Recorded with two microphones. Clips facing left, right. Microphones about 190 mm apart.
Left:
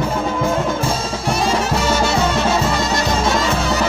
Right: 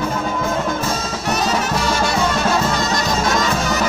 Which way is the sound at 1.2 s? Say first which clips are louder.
Left 1 dB; 30° left (ahead or behind).